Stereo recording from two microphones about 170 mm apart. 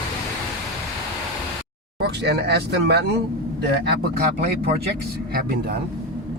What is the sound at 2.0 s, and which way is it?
Speech, 75° right (ahead or behind).